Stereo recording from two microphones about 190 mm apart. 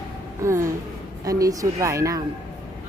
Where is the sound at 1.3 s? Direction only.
20° right (ahead or behind).